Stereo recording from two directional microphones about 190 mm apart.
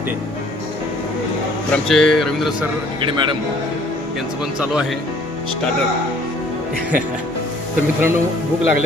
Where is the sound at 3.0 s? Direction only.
25° right (ahead or behind).